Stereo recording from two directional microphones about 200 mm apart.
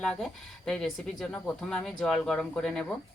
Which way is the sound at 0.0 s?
Centre (ahead or behind).